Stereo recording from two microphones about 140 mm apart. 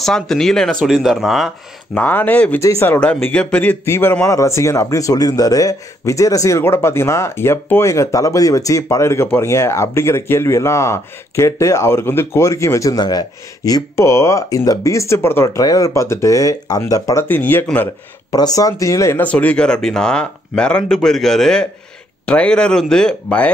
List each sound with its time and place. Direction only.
0.0 s speech: 5° left (ahead or behind)
2.0 s a man's voice: 10° left (ahead or behind)
18.3 s speech: 25° left (ahead or behind); by 23.5 s 5° left (ahead or behind)